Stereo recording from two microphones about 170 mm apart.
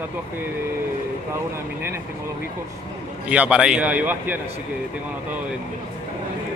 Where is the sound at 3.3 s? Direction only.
5° right (ahead or behind).